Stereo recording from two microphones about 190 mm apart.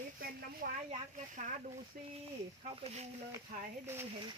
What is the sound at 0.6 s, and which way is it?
Speech, 55° right (ahead or behind).